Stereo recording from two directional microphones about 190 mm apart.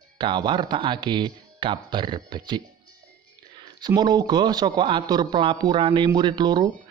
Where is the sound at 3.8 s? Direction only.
20° right (ahead or behind).